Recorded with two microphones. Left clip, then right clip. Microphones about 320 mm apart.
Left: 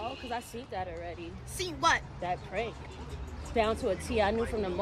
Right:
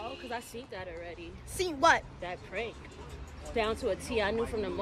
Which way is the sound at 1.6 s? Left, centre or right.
Right.